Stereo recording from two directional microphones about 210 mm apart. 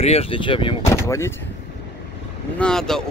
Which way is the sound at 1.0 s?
15° left (ahead or behind).